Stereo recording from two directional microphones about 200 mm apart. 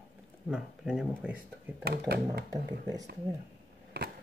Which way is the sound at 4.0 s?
50° right (ahead or behind).